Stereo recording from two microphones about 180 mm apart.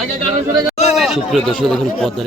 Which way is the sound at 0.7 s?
35° left (ahead or behind).